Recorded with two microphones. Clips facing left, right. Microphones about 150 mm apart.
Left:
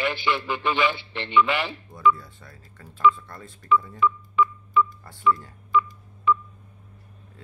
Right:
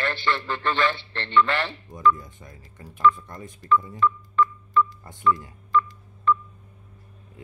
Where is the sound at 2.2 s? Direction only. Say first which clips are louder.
Right 2 dB; 15° right (ahead or behind).